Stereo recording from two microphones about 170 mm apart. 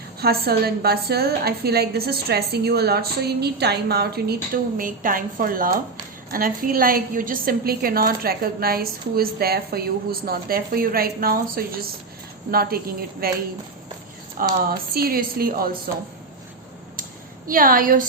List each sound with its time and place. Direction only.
0.2 s a woman's voice: 65° right (ahead or behind)
14.7 s a woman's voice: 60° right (ahead or behind)
17.5 s a woman's voice: 55° right (ahead or behind)